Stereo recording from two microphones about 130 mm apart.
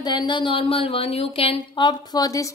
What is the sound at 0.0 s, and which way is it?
Speech, 35° left (ahead or behind).